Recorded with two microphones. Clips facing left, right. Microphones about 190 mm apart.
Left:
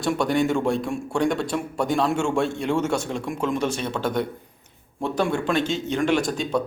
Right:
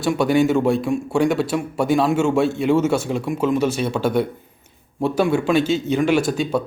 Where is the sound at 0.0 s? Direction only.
5° right (ahead or behind).